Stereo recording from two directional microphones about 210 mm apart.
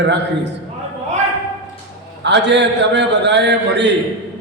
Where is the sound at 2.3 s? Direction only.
55° right (ahead or behind).